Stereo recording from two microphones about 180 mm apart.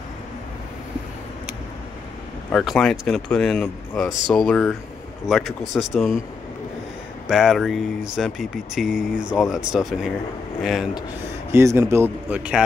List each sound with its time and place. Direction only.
2.5 s speech: centre (ahead or behind)
5.7 s speech: 5° left (ahead or behind)
7.2 s speech: centre (ahead or behind)
11.5 s a man's voice: 15° right (ahead or behind)